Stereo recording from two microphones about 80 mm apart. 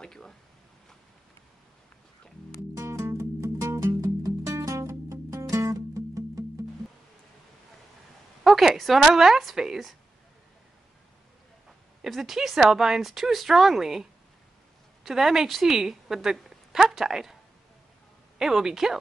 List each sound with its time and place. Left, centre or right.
0.0 s a sound: centre
2.7 s music: right
8.5 s a woman's voice: centre
12.0 s a woman's voice: centre
15.0 s a woman's voice: centre
18.4 s a woman's voice: centre